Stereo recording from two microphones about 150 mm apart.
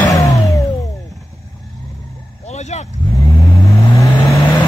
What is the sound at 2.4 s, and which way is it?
Vehicle, 50° left (ahead or behind).